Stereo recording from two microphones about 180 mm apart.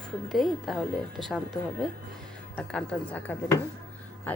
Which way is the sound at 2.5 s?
10° left (ahead or behind).